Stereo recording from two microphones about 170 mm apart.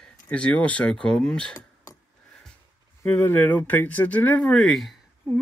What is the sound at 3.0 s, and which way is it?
Speech, 15° left (ahead or behind).